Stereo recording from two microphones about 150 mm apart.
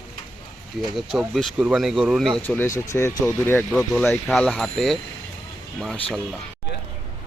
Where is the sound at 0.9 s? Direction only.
Centre (ahead or behind).